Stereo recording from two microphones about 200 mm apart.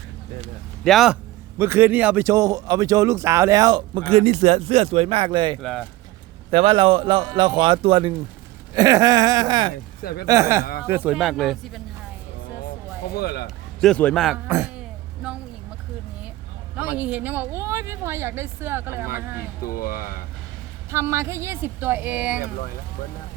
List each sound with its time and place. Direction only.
0.9 s speech: centre (ahead or behind)
1.5 s a man's voice: 10° right (ahead or behind)
5.5 s speech: centre (ahead or behind)
6.5 s a man's voice: 30° right (ahead or behind)
10.0 s speech: 50° left (ahead or behind)
10.2 s speech: 15° right (ahead or behind); by 11.8 s centre (ahead or behind)
13.1 s speech: 50° left (ahead or behind)
13.8 s speech: 5° left (ahead or behind)
14.4 s throat clearing: 10° right (ahead or behind)
16.7 s speech: 5° right (ahead or behind)
19.6 s speech: 45° left (ahead or behind)
20.9 s speech: 15° right (ahead or behind)